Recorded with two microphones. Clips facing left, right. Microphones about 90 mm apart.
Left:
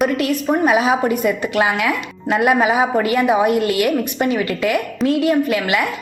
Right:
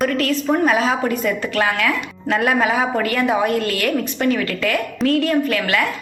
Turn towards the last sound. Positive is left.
turn(degrees=15)  # may be behind; listen again after turning